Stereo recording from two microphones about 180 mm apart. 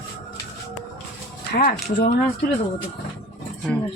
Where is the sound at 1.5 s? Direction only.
60° left (ahead or behind).